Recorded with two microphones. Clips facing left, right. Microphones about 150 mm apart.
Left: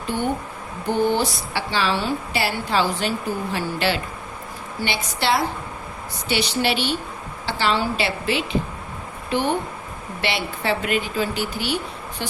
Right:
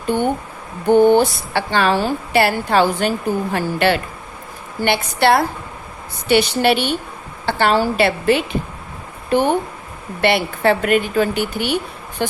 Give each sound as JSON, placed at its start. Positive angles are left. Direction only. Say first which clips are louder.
{"t": 0.9, "sound": "a woman's voice", "louder": "right 9 dB", "side_deg": -55}
{"t": 2.4, "sound": "a woman's voice", "louder": "right 7 dB", "side_deg": -55}